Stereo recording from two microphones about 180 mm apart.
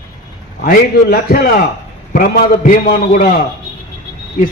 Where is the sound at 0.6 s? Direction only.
55° left (ahead or behind).